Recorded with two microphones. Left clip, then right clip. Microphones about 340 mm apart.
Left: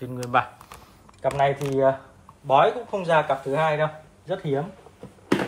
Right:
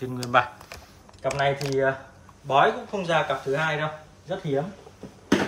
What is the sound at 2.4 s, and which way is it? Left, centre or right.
Speech, centre.